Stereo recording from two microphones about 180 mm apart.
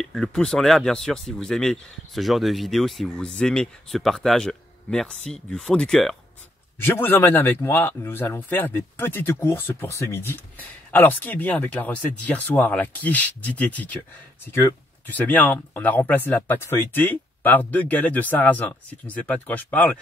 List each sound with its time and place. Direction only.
0.0 s speech: 5° left (ahead or behind)
6.8 s a man's voice: 10° left (ahead or behind)